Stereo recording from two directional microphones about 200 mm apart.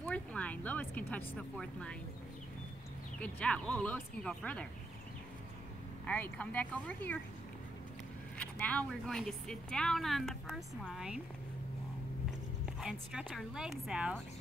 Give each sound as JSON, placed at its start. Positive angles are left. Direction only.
{"t": 0.0, "sound": "speech", "side_deg": 5}
{"t": 3.2, "sound": "speech", "side_deg": 5}
{"t": 6.0, "sound": "speech", "side_deg": 5}
{"t": 8.4, "sound": "speech", "side_deg": 5}
{"t": 12.8, "sound": "speech", "side_deg": 0}